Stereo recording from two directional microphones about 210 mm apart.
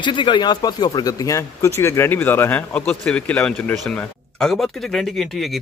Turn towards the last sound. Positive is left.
turn(degrees=0)  # may be behind; listen again after turning